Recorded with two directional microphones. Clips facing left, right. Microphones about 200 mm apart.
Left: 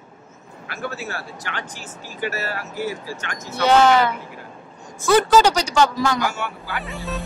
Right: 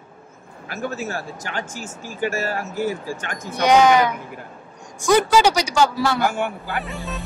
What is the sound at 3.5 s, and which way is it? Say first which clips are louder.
Speech: right 1 dB; 15° right (ahead or behind).